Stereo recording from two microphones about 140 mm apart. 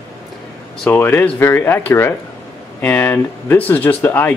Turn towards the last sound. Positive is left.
turn(degrees=15)  # may be behind; listen again after turning